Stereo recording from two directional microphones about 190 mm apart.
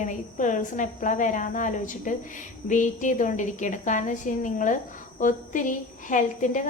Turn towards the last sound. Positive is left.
turn(degrees=40)  # may be behind; listen again after turning